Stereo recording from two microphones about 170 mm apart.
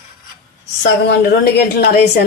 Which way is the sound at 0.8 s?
80° left.